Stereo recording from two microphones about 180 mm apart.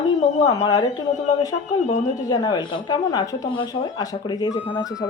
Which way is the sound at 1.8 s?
40° left (ahead or behind).